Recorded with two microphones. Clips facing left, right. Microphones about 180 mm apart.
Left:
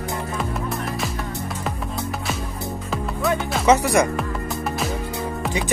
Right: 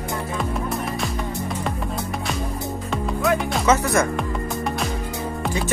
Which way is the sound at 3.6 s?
15° left (ahead or behind).